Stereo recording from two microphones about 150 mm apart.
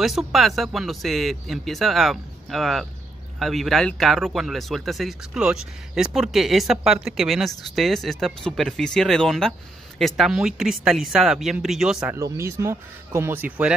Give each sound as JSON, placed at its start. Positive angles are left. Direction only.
{"t": 0.0, "sound": "speech", "side_deg": 0}
{"t": 12.2, "sound": "speech", "side_deg": -15}